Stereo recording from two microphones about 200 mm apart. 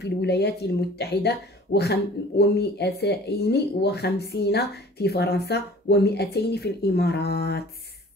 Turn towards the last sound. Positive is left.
turn(degrees=50)  # may be behind; listen again after turning